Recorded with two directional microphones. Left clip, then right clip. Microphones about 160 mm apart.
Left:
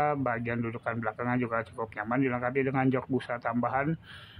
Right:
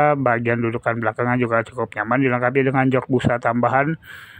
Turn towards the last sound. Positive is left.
turn(degrees=-35)  # may be behind; listen again after turning